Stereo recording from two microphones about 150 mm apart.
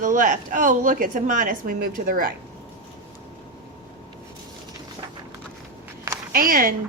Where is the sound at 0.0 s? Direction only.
60° right (ahead or behind).